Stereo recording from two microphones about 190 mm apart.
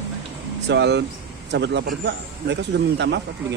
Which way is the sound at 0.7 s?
65° right (ahead or behind).